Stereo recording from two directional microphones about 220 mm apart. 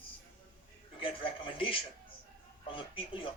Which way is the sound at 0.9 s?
25° left (ahead or behind).